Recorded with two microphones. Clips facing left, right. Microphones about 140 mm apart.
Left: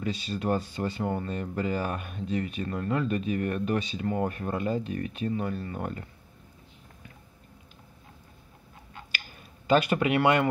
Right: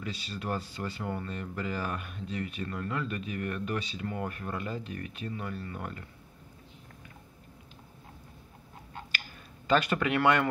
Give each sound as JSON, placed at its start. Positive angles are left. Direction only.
{"t": 0.0, "sound": "speech", "side_deg": 20}
{"t": 9.7, "sound": "speech", "side_deg": 15}